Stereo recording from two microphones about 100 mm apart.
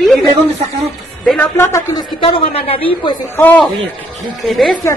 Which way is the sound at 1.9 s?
55° left (ahead or behind).